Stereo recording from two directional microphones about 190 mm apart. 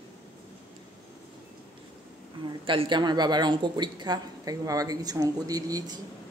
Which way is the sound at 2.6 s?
25° right (ahead or behind).